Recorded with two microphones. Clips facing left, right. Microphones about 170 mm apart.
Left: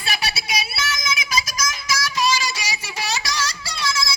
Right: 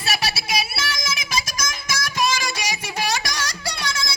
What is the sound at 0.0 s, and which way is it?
Music, 45° right (ahead or behind).